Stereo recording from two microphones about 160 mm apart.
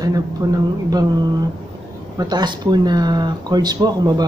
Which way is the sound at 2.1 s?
25° right (ahead or behind).